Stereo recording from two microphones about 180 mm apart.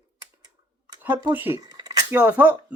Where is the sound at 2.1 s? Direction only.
10° right (ahead or behind).